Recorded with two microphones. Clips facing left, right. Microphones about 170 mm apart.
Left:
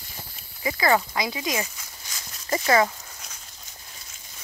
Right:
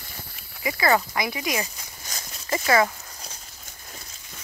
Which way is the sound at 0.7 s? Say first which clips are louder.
Even; 20° left (ahead or behind).